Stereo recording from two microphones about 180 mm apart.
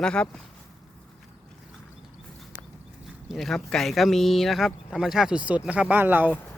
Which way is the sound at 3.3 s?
Centre (ahead or behind).